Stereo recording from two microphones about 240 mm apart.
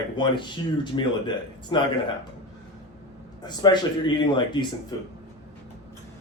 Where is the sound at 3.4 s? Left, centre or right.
Centre.